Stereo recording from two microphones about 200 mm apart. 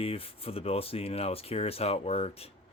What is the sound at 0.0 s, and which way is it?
Speech, 30° left (ahead or behind).